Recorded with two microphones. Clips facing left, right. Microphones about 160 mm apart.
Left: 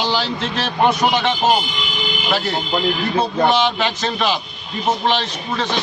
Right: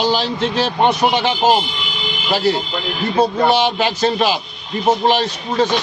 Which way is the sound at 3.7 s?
35° right (ahead or behind).